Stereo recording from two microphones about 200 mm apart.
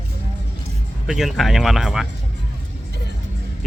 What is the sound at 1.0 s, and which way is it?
Speech, centre (ahead or behind).